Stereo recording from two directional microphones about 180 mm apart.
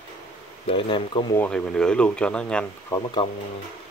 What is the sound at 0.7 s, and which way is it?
Speech, 30° left (ahead or behind).